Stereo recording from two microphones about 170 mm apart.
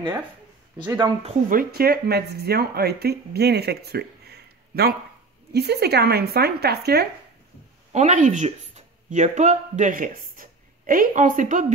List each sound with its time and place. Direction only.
0.8 s speech: 25° right (ahead or behind)
1.5 s speech: 60° right (ahead or behind)
7.9 s speech: 45° right (ahead or behind)